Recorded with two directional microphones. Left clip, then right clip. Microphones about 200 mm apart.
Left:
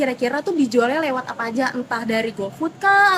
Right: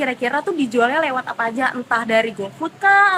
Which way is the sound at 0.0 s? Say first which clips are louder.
Right 1 dB; 20° left (ahead or behind).